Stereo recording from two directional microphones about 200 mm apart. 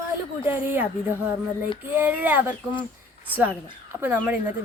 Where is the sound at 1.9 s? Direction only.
10° right (ahead or behind).